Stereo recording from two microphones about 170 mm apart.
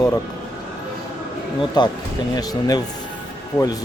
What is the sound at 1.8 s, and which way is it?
A man's voice, 25° left (ahead or behind).